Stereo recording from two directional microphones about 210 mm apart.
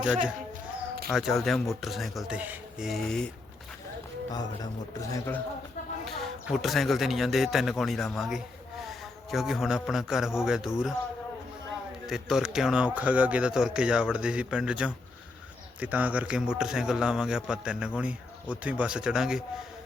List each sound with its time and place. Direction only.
0.0 s a man's voice: 5° right (ahead or behind)
4.3 s a man's voice: 20° left (ahead or behind)
6.1 s a man's voice: centre (ahead or behind)
12.0 s a man's voice: centre (ahead or behind)